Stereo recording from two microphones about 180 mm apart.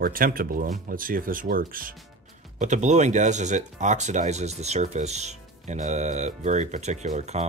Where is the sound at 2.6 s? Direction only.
40° right (ahead or behind).